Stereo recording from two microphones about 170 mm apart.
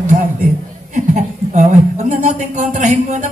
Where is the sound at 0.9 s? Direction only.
40° right (ahead or behind).